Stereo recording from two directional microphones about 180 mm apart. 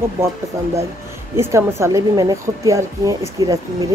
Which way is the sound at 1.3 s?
15° right (ahead or behind).